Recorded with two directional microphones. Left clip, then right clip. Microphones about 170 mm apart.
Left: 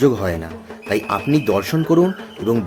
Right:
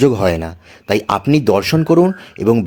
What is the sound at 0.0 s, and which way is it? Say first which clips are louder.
Speech: right 4 dB; 30° right (ahead or behind).